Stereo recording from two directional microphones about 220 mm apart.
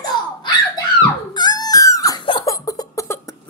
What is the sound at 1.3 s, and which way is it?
Crying, 20° left (ahead or behind).